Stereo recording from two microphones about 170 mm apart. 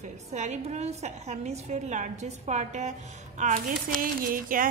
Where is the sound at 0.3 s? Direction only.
40° right (ahead or behind).